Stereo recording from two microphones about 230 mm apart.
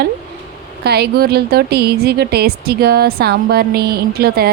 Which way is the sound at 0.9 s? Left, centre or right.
Right.